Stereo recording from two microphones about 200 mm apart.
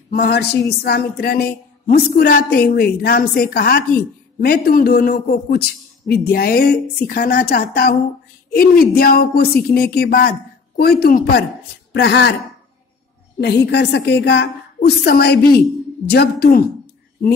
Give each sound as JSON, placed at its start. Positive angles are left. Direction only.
{"t": 0.1, "sound": "a woman's voice", "side_deg": 55}
{"t": 11.9, "sound": "a woman's voice", "side_deg": 60}
{"t": 13.4, "sound": "a woman's voice", "side_deg": 55}